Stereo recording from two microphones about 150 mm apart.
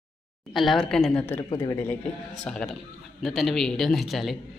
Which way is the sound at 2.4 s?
5° left (ahead or behind).